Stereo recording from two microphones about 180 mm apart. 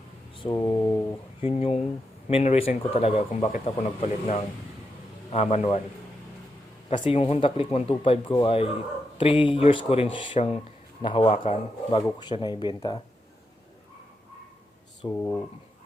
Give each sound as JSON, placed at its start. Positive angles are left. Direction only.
{"t": 0.4, "sound": "speech", "side_deg": 20}
{"t": 1.4, "sound": "speech", "side_deg": 30}
{"t": 7.1, "sound": "speech", "side_deg": 30}
{"t": 15.0, "sound": "speech", "side_deg": 15}